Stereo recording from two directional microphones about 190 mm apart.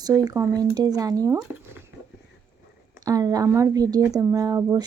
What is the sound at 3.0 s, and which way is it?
Speech, 20° right (ahead or behind).